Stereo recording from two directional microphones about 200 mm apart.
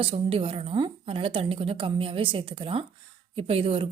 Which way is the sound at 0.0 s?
30° right (ahead or behind).